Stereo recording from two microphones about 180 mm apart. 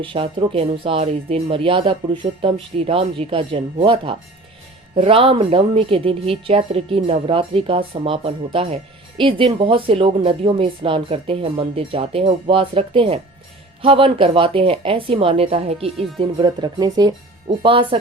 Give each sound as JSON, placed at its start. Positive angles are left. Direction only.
{"t": 0.0, "sound": "speech", "side_deg": -30}